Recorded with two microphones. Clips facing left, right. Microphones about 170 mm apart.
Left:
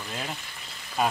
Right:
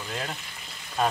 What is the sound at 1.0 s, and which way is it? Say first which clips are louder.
Speech: even; 5° left (ahead or behind).